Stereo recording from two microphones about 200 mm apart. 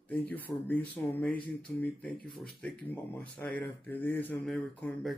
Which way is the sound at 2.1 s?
45° left (ahead or behind).